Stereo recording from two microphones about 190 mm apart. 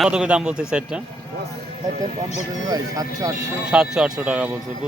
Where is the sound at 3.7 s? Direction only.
5° right (ahead or behind).